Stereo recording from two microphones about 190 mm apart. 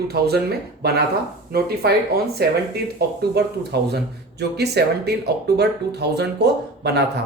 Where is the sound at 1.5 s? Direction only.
55° right (ahead or behind).